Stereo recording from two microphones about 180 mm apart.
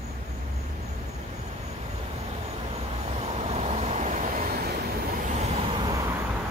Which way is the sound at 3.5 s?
35° right (ahead or behind).